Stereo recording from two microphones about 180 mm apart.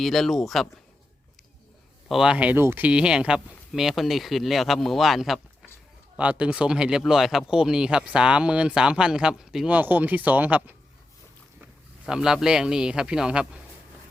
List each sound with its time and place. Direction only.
0.0 s speech: centre (ahead or behind)
2.0 s a man's voice: 5° right (ahead or behind)